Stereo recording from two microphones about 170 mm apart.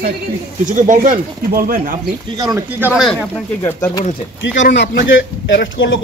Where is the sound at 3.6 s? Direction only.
25° left (ahead or behind).